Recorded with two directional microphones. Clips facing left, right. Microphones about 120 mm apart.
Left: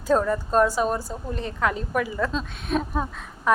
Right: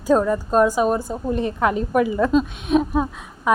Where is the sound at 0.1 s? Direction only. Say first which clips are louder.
Right 4 dB; 10° right (ahead or behind).